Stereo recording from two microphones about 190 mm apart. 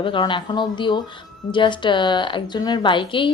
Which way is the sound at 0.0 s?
25° left (ahead or behind).